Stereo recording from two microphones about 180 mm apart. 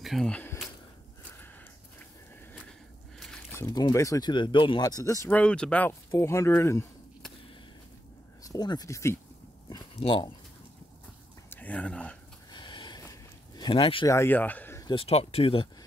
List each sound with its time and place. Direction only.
0.0 s speech: centre (ahead or behind)
3.5 s speech: 20° left (ahead or behind)
5.3 s speech: 5° left (ahead or behind)
8.5 s speech: 20° left (ahead or behind)
9.7 s speech: 25° left (ahead or behind)
11.5 s speech: 10° left (ahead or behind)
12.4 s a sound: 25° left (ahead or behind)
14.1 s speech: 10° left (ahead or behind)
14.9 s speech: 30° left (ahead or behind)